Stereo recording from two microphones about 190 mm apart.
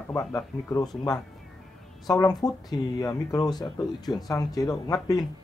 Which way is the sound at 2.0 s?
20° left (ahead or behind).